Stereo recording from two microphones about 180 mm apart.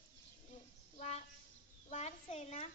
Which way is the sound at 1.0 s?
35° left (ahead or behind).